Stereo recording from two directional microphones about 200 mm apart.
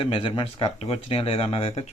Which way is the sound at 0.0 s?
25° left (ahead or behind).